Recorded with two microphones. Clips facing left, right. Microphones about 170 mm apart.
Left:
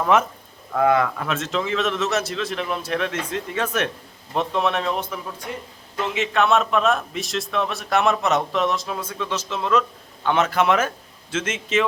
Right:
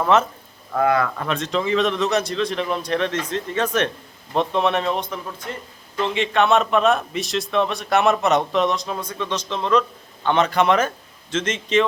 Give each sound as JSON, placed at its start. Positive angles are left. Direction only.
{"t": 0.1, "sound": "a man's voice", "side_deg": 10}
{"t": 1.2, "sound": "a man's voice", "side_deg": 5}